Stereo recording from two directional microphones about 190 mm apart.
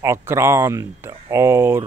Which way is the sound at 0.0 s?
15° right (ahead or behind).